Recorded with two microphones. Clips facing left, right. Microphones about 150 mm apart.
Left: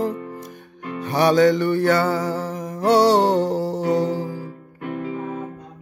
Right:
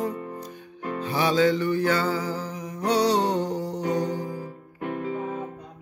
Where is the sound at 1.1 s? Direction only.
65° left (ahead or behind); by 4.3 s 90° left.